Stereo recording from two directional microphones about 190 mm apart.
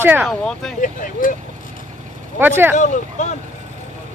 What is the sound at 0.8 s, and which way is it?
Speech, 45° left (ahead or behind).